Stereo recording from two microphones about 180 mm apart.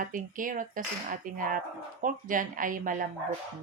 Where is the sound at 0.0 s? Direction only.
50° right (ahead or behind).